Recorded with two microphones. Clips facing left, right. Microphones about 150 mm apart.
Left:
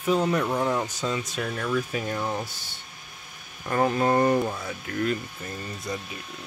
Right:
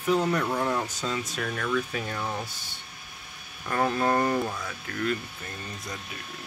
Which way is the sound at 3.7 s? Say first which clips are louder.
Left 2 dB; 20° left (ahead or behind).